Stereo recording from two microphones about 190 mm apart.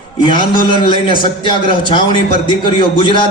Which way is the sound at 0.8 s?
25° left (ahead or behind).